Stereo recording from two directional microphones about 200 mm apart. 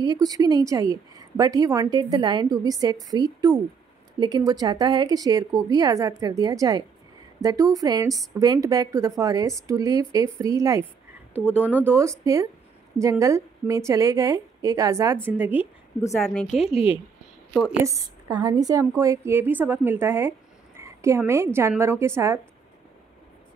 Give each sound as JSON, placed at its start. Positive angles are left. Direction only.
{"t": 0.0, "sound": "a woman's voice", "side_deg": -20}
{"t": 11.4, "sound": "speech", "side_deg": 10}
{"t": 11.7, "sound": "a woman's voice", "side_deg": -10}
{"t": 16.2, "sound": "a woman's voice", "side_deg": 5}
{"t": 16.7, "sound": "a woman's voice", "side_deg": 30}
{"t": 17.8, "sound": "a woman's voice", "side_deg": -15}